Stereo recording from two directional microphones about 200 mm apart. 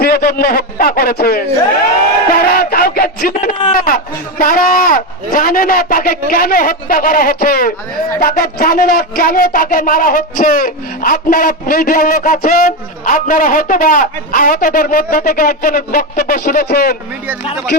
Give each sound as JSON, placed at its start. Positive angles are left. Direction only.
{"t": 0.0, "sound": "speech", "side_deg": 50}
{"t": 2.4, "sound": "a sound", "side_deg": 50}
{"t": 3.8, "sound": "speech", "side_deg": 45}